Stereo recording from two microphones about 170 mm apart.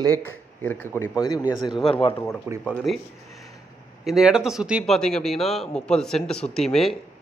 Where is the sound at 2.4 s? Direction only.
15° right (ahead or behind).